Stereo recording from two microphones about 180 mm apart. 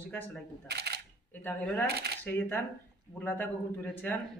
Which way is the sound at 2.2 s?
10° left (ahead or behind).